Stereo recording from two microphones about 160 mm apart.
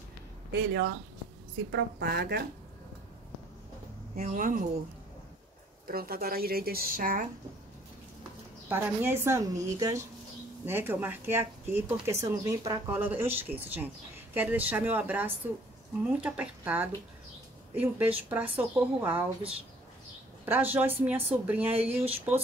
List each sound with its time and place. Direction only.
0.5 s a woman's voice: 90° right
4.2 s a woman's voice: 55° right (ahead or behind)
5.9 s speech: 70° right (ahead or behind)
8.6 s a woman's voice: 15° right (ahead or behind)